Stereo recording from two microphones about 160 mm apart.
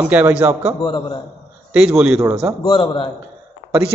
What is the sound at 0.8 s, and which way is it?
Speech, 30° left (ahead or behind).